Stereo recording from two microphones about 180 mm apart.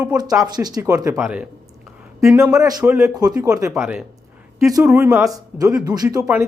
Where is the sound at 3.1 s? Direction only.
20° right (ahead or behind).